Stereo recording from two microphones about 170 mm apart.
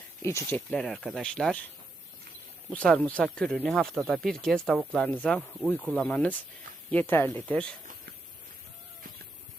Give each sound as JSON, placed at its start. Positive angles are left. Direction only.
{"t": 0.2, "sound": "speech", "side_deg": 15}
{"t": 0.7, "sound": "speech", "side_deg": 5}
{"t": 2.7, "sound": "speech", "side_deg": 5}